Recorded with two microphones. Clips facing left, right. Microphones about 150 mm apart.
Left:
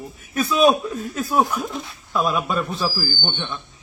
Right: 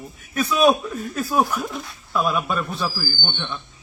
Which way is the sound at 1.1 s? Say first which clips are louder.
Left 1 dB; centre (ahead or behind).